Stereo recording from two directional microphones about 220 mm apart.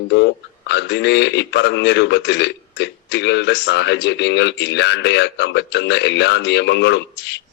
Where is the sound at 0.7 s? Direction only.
50° left (ahead or behind).